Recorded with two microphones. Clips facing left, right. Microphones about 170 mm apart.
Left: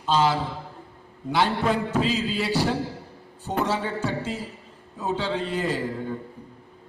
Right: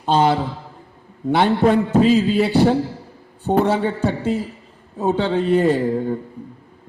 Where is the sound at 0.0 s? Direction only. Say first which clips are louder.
Right 5 dB; 55° right (ahead or behind).